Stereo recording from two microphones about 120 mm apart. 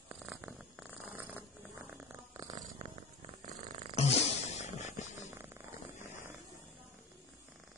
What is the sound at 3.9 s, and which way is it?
Purr, 65° left (ahead or behind).